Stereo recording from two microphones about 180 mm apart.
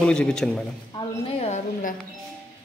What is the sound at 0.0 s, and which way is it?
Speech, 5° left (ahead or behind).